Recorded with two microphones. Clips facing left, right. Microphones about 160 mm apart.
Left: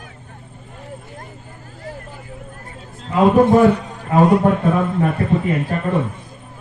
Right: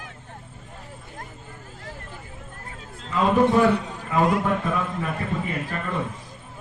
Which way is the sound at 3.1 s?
45° left (ahead or behind).